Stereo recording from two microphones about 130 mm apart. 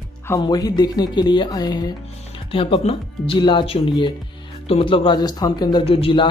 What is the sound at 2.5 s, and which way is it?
Speech, 45° left (ahead or behind).